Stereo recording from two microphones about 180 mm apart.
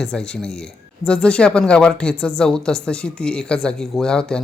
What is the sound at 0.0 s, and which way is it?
Speech, 5° left (ahead or behind).